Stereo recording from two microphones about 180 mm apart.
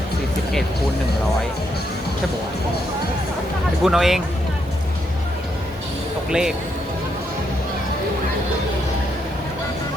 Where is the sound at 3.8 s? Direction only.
Centre (ahead or behind).